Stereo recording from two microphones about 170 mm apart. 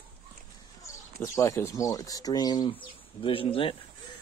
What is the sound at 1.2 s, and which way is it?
Speech, 20° left (ahead or behind).